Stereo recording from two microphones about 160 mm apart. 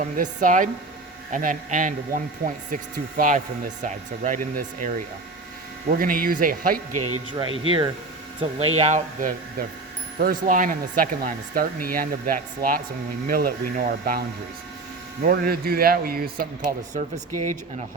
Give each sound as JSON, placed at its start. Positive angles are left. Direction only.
{"t": 0.0, "sound": "speech", "side_deg": -55}
{"t": 7.3, "sound": "speech", "side_deg": -30}
{"t": 9.6, "sound": "speech", "side_deg": -70}